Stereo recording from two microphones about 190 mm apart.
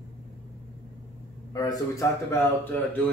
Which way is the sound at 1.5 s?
20° left (ahead or behind).